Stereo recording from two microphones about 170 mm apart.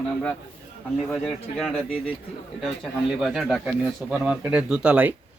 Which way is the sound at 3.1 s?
Centre (ahead or behind).